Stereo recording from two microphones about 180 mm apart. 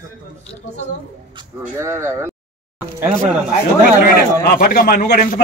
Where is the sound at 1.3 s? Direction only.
20° right (ahead or behind).